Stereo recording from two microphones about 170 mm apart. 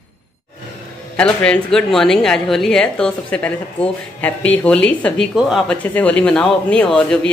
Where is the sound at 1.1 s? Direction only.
5° left (ahead or behind).